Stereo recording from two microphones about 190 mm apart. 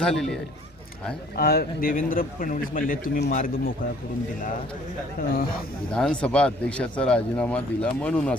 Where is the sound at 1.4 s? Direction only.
55° left (ahead or behind).